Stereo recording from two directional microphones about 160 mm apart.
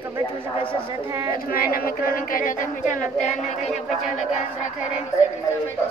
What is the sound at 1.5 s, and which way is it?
A woman's voice, 65° left (ahead or behind).